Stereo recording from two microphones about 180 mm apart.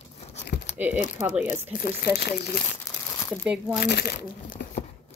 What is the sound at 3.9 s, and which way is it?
Speech, 60° left (ahead or behind).